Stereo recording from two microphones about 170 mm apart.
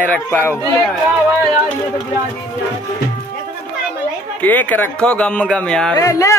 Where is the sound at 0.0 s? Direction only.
10° left (ahead or behind).